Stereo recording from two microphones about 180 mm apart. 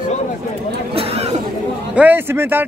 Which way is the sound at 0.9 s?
35° right (ahead or behind).